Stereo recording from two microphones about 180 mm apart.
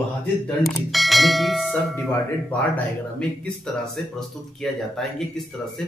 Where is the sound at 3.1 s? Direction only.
Centre (ahead or behind).